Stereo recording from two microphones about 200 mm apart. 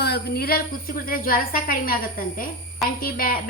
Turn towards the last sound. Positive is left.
turn(degrees=45)  # may be behind; listen again after turning